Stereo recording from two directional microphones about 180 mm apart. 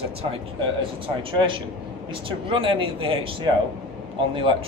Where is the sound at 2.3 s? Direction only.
30° right (ahead or behind).